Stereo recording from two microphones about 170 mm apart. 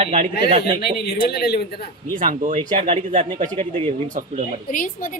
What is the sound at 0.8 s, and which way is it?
Speech, 65° left (ahead or behind).